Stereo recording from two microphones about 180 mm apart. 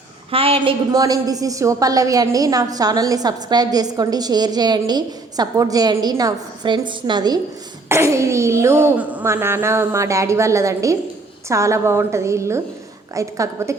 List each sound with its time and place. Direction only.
0.3 s a woman's voice: 30° right (ahead or behind)